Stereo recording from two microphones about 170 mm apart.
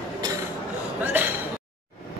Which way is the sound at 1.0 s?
10° right (ahead or behind).